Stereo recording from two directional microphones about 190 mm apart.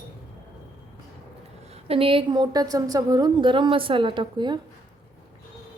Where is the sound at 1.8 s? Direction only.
30° right (ahead or behind).